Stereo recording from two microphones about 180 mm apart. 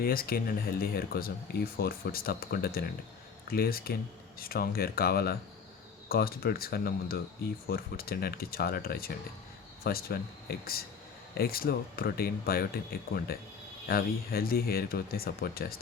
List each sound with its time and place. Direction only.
0.0 s speech: 55° left (ahead or behind)